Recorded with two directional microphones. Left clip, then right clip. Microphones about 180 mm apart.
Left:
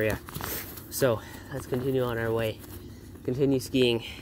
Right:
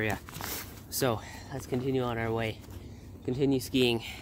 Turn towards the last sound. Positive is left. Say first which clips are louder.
# left 3 dB
turn(degrees=-5)  # may be behind; listen again after turning